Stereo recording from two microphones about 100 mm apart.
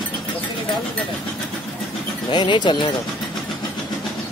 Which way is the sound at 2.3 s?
50° left (ahead or behind).